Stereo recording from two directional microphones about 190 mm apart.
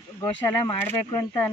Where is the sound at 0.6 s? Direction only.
15° left (ahead or behind).